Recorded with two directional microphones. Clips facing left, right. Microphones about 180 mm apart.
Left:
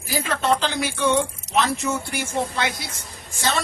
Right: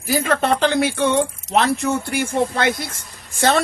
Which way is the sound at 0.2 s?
55° right (ahead or behind).